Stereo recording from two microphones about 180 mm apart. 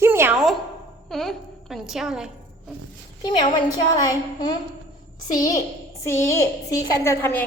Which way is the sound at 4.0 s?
20° left (ahead or behind).